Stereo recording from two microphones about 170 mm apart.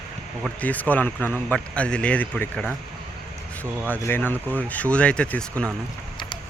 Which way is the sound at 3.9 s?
10° left (ahead or behind).